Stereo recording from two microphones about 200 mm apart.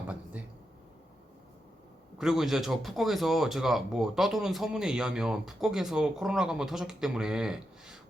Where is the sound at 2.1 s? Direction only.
Centre (ahead or behind).